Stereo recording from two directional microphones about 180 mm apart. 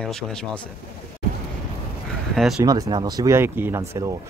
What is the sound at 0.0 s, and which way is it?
Speech, 5° left (ahead or behind).